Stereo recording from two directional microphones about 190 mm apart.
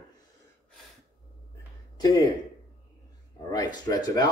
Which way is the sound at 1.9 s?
20° left (ahead or behind).